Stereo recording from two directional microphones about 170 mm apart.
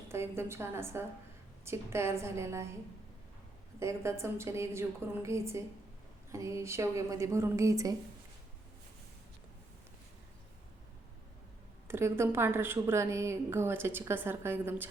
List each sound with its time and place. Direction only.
0.1 s speech: 15° right (ahead or behind)
3.8 s speech: 15° right (ahead or behind)
11.9 s speech: 15° right (ahead or behind)